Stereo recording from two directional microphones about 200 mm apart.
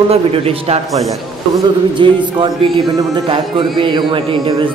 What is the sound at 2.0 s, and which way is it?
Speech, 25° right (ahead or behind).